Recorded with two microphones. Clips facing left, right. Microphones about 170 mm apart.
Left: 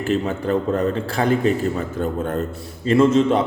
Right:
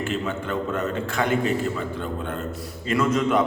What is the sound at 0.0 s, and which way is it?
A man's voice, 40° left (ahead or behind).